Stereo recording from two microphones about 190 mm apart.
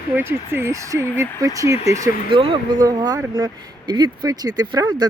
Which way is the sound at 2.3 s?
25° right (ahead or behind).